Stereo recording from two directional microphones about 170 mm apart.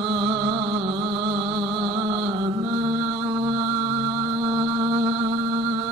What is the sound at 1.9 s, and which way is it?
Mantra, 30° right (ahead or behind).